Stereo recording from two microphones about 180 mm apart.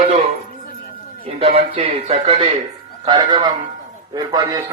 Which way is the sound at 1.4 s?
30° right (ahead or behind).